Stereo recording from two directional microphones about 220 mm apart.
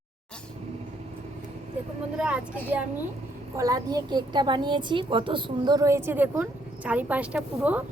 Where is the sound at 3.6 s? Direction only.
15° right (ahead or behind).